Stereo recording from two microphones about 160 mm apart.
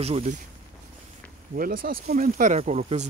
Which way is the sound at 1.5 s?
65° right (ahead or behind).